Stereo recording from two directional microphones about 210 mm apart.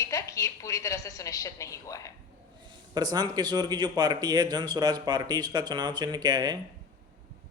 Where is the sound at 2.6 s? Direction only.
20° right (ahead or behind).